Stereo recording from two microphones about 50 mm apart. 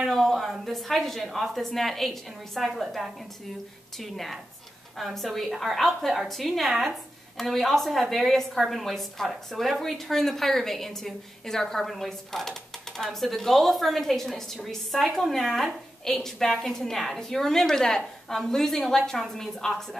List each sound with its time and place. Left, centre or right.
0.0 s a woman's voice: centre